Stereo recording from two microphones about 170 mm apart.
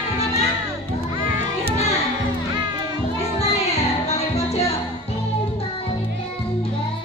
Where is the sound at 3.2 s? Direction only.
40° left (ahead or behind).